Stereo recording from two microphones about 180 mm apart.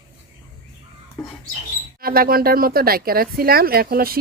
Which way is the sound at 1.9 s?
55° right (ahead or behind).